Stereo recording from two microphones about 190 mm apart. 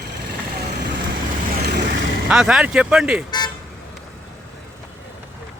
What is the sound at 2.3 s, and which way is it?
Speech, 5° right (ahead or behind).